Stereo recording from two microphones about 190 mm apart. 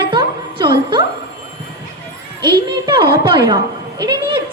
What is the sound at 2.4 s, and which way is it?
A woman's voice, 25° right (ahead or behind).